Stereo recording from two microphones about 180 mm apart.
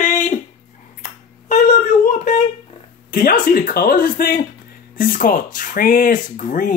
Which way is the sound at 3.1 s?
50° left (ahead or behind).